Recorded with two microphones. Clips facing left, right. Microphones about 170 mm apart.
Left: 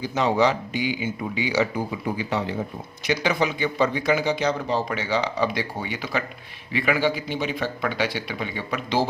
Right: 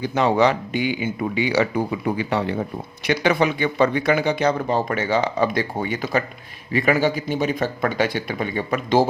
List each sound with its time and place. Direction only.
0.0 s speech: 60° right (ahead or behind)